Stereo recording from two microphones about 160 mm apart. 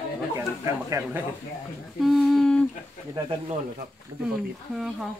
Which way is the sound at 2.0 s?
Centre (ahead or behind).